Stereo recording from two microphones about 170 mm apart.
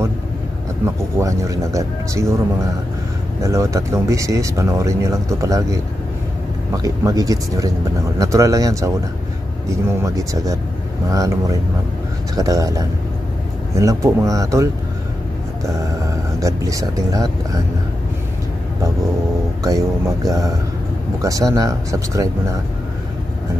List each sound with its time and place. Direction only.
1.1 s speech: 20° right (ahead or behind)
6.8 s speech: 20° right (ahead or behind)
16.3 s speech: 20° right (ahead or behind)
20.2 s speech: 20° right (ahead or behind)